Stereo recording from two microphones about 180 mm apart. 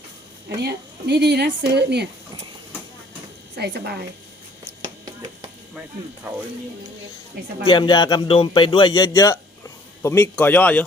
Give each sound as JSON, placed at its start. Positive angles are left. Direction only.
{"t": 0.4, "sound": "speech", "side_deg": -65}
{"t": 3.5, "sound": "speech", "side_deg": -65}
{"t": 4.8, "sound": "a sound", "side_deg": -25}
{"t": 6.3, "sound": "speech", "side_deg": -10}
{"t": 7.6, "sound": "speech", "side_deg": 25}